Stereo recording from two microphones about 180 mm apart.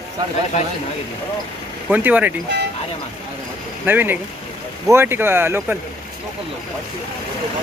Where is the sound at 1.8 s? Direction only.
10° right (ahead or behind).